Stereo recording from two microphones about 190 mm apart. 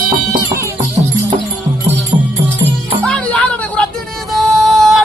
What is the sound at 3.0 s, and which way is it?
Music, 5° left (ahead or behind).